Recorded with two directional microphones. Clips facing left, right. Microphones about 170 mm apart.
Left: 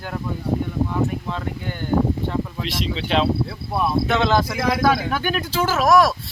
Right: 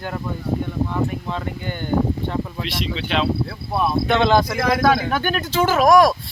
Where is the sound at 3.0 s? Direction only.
35° left (ahead or behind).